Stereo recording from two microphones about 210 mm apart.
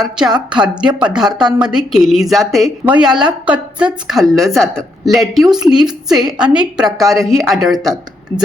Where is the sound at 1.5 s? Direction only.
5° right (ahead or behind).